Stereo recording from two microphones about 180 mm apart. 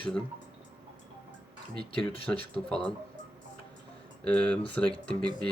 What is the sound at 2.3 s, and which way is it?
Speech, 10° left (ahead or behind).